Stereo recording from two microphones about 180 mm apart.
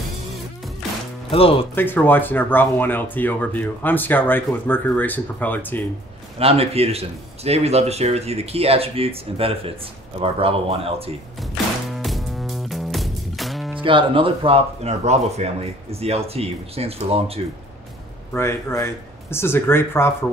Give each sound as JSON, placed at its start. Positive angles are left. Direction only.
{"t": 1.3, "sound": "speech", "side_deg": 30}
{"t": 1.8, "sound": "speech", "side_deg": 10}
{"t": 6.3, "sound": "speech", "side_deg": -35}
{"t": 11.5, "sound": "music", "side_deg": 0}
{"t": 13.8, "sound": "speech", "side_deg": -30}
{"t": 18.3, "sound": "speech", "side_deg": 15}